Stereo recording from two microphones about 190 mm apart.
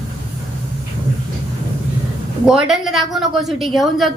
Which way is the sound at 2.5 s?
Centre (ahead or behind).